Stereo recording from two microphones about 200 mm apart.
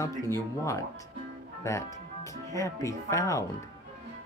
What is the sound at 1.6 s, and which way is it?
Speech, 15° left (ahead or behind).